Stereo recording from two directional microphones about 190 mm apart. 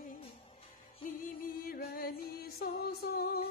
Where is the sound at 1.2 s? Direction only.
50° left (ahead or behind).